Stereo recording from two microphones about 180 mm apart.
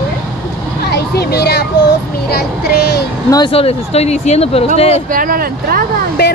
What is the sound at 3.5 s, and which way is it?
Speech, 35° left (ahead or behind).